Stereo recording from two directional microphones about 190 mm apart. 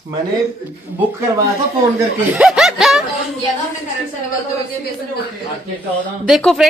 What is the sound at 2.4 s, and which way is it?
Speech, centre (ahead or behind).